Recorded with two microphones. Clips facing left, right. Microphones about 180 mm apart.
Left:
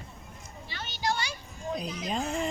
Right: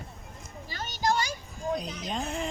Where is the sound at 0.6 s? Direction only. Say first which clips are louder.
Right 3 dB; 40° right (ahead or behind).